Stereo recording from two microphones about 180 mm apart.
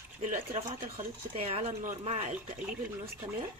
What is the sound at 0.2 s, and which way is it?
Speech, 40° right (ahead or behind).